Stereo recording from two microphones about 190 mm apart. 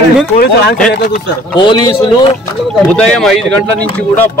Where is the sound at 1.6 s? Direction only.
25° left (ahead or behind).